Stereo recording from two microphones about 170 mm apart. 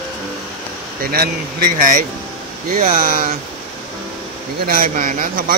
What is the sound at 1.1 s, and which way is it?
Speech, 65° right (ahead or behind).